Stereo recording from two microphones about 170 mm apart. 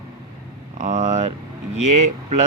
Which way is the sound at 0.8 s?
45° right (ahead or behind).